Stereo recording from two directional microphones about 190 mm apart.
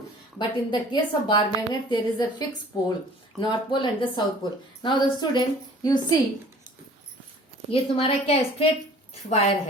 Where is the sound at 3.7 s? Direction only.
25° left (ahead or behind).